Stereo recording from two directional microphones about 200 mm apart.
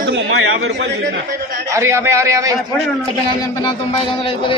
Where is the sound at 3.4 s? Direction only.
25° left (ahead or behind).